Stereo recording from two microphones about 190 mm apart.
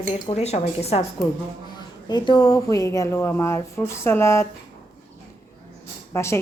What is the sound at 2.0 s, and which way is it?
A woman's voice, 20° left (ahead or behind).